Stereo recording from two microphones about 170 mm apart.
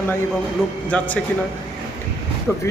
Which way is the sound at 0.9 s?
10° left (ahead or behind).